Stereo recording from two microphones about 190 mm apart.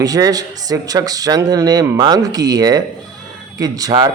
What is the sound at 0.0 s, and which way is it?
Speech, 20° right (ahead or behind).